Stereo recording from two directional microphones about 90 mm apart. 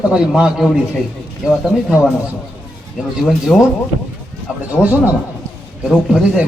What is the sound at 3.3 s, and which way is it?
Speech, centre (ahead or behind).